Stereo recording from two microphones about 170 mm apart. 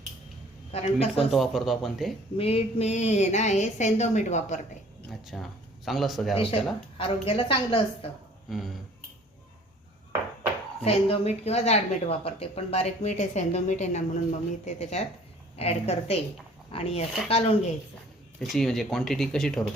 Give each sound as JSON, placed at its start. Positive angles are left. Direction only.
{"t": 0.7, "sound": "a woman's voice", "side_deg": 35}
{"t": 1.3, "sound": "speech", "side_deg": 0}
{"t": 2.4, "sound": "speech", "side_deg": 35}
{"t": 5.2, "sound": "speech", "side_deg": 0}
{"t": 6.3, "sound": "a woman's voice", "side_deg": 30}
{"t": 8.4, "sound": "speech", "side_deg": 0}
{"t": 10.8, "sound": "a woman's voice", "side_deg": 35}
{"t": 18.3, "sound": "speech", "side_deg": 0}